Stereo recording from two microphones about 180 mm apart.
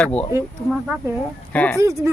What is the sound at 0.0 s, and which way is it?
Speech, 5° left (ahead or behind).